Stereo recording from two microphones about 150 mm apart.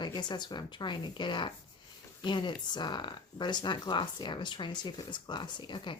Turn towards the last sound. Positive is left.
turn(degrees=30)  # may be behind; listen again after turning